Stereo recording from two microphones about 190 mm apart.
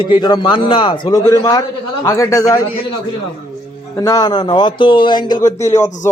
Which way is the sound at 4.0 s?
20° left (ahead or behind).